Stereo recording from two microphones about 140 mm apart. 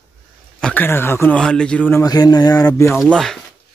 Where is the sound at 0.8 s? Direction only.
15° left (ahead or behind).